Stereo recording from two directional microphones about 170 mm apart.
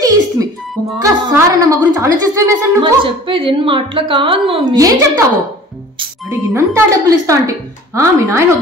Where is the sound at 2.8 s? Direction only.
30° right (ahead or behind).